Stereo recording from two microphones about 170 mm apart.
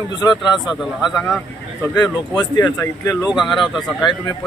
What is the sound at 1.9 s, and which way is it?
Speech, 25° left (ahead or behind).